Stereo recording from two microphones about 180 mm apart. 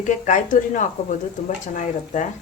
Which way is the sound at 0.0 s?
45° left (ahead or behind).